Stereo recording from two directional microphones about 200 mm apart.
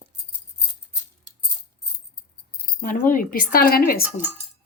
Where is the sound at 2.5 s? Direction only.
45° left (ahead or behind).